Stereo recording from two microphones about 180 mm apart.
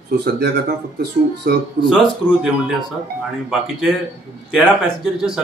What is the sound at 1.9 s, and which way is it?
Speech, centre (ahead or behind).